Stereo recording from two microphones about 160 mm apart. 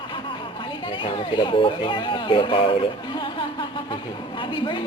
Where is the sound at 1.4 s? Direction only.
30° left (ahead or behind).